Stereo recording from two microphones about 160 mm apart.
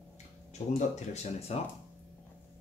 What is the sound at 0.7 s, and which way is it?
Speech, 45° left (ahead or behind).